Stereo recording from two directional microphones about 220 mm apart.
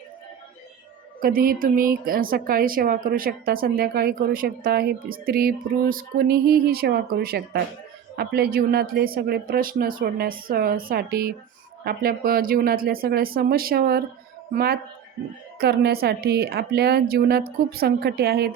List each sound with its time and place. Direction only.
1.2 s a woman's voice: 40° right (ahead or behind)